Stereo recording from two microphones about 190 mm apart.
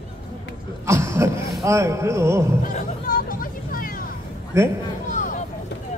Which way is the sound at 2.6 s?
45° left (ahead or behind).